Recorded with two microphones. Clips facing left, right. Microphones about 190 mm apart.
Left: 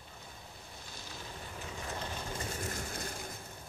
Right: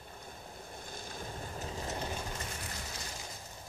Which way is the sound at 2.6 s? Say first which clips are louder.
Left 5 dB; 50° left (ahead or behind).